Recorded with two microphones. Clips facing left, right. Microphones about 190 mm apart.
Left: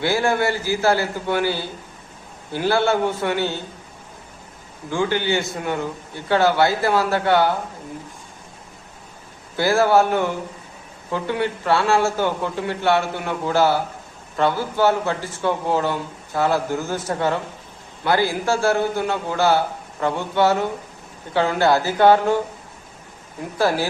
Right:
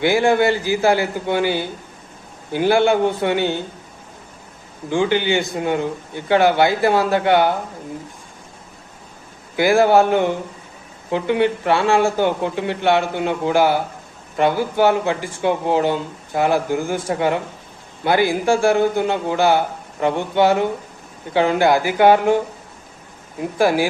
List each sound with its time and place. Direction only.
0.0 s speech: 15° right (ahead or behind)
4.9 s a man's voice: 20° right (ahead or behind)
9.6 s speech: 15° right (ahead or behind)
23.6 s speech: 15° right (ahead or behind)